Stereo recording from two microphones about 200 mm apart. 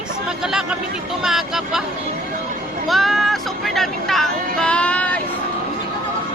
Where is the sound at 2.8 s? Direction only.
Centre (ahead or behind).